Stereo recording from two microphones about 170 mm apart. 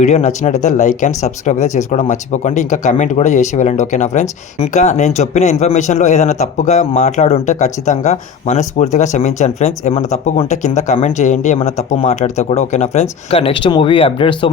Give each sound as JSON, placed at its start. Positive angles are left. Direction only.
{"t": 0.0, "sound": "speech", "side_deg": 45}